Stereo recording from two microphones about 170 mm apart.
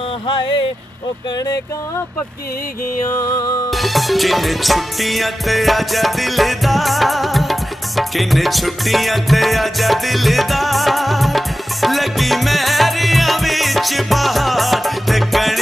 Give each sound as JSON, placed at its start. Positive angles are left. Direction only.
{"t": 0.3, "sound": "music", "side_deg": 30}
{"t": 3.1, "sound": "music", "side_deg": 20}
{"t": 3.7, "sound": "music", "side_deg": 0}